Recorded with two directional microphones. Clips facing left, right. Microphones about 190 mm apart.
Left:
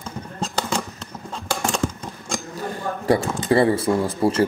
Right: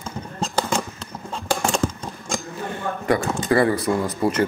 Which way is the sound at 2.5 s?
40° left (ahead or behind).